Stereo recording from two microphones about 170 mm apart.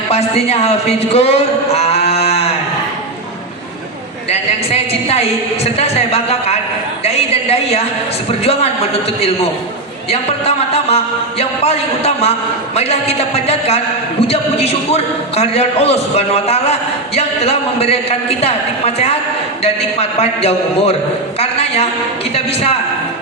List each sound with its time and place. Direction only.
0.1 s speech: 35° left (ahead or behind)
4.3 s a man's voice: 35° left (ahead or behind)
7.0 s a sound: 35° left (ahead or behind)
8.3 s a man's voice: 35° left (ahead or behind)
10.1 s a man's voice: 35° left (ahead or behind)